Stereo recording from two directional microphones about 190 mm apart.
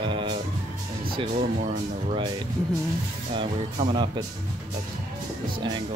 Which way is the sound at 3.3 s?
25° right (ahead or behind).